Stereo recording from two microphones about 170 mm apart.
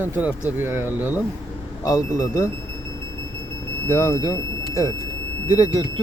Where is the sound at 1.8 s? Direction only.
15° left (ahead or behind).